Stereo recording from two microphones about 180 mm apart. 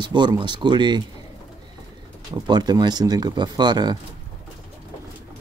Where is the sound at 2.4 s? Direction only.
20° right (ahead or behind).